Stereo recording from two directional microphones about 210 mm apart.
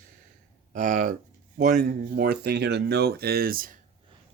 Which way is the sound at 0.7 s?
35° right (ahead or behind).